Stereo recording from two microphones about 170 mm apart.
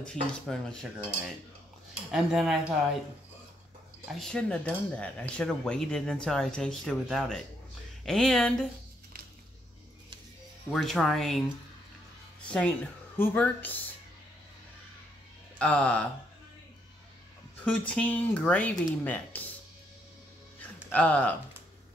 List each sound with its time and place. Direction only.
0.0 s speech: 5° left (ahead or behind)
2.0 s speech: centre (ahead or behind)
4.1 s speech: 5° left (ahead or behind)
10.7 s speech: centre (ahead or behind)
13.2 s speech: 10° left (ahead or behind)
15.6 s speech: 5° left (ahead or behind)
17.6 s speech: 10° left (ahead or behind)
20.9 s speech: 10° left (ahead or behind)